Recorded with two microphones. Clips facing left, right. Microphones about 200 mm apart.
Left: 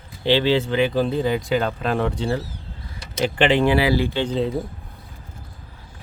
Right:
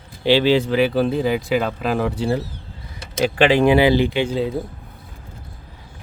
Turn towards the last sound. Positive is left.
turn(degrees=-5)  # may be behind; listen again after turning